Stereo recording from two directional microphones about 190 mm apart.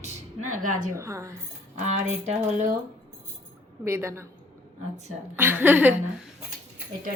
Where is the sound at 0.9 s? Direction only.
15° right (ahead or behind).